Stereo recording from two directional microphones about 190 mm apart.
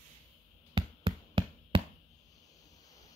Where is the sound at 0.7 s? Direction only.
25° right (ahead or behind).